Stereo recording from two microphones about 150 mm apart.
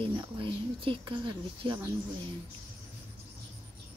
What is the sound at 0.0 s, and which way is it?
Speech, 35° right (ahead or behind).